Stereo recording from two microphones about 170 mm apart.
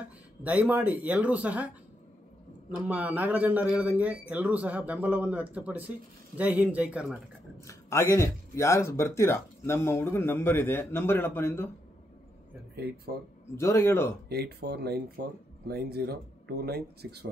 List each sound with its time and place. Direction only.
0.4 s speech: 10° right (ahead or behind)
2.9 s speech: 10° right (ahead or behind)
7.6 s speech: 15° left (ahead or behind)
12.7 s speech: 70° right (ahead or behind)
13.6 s speech: 15° left (ahead or behind)
14.3 s speech: 70° right (ahead or behind)